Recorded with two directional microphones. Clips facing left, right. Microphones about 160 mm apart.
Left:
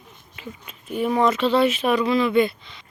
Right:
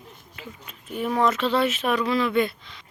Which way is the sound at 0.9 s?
Centre (ahead or behind).